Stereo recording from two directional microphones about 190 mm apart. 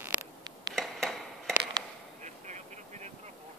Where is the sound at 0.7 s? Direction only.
Centre (ahead or behind).